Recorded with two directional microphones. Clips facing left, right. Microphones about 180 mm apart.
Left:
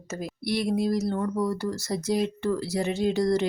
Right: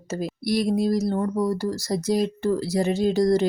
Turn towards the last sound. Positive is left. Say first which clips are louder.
# right 4 dB
turn(degrees=-35)  # may be behind; listen again after turning